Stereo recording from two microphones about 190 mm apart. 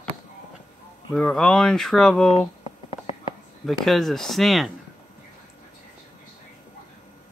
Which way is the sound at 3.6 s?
Centre (ahead or behind).